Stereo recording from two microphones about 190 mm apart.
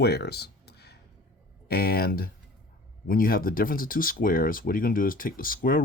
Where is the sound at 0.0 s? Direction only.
60° left (ahead or behind).